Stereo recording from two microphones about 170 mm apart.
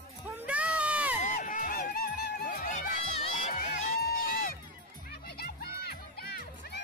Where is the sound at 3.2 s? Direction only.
40° left (ahead or behind).